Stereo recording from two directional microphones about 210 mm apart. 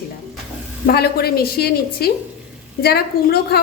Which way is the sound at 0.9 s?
45° left (ahead or behind).